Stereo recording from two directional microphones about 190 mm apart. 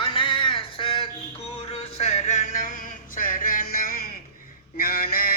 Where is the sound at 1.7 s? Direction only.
35° left (ahead or behind).